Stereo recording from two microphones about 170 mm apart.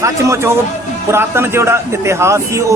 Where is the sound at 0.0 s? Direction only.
15° right (ahead or behind).